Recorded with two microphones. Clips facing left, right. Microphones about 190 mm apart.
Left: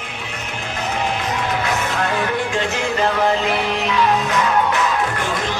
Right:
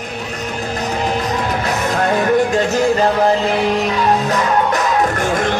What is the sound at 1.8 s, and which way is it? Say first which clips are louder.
Music: right 6 dB; 40° right (ahead or behind).